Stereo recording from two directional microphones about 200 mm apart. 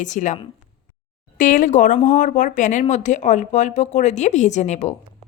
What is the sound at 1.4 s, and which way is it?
A woman's voice, 40° left (ahead or behind).